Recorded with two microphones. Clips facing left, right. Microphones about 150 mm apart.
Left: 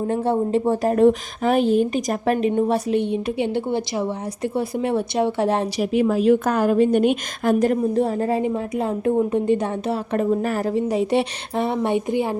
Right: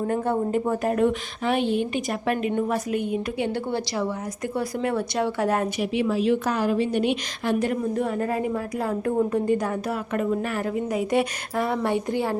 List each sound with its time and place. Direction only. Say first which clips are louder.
0.1 s a woman's voice: left 5 dB; 25° left (ahead or behind)
5.8 s a woman's voice: left 8 dB; 45° left (ahead or behind); by 12.4 s 15° left (ahead or behind)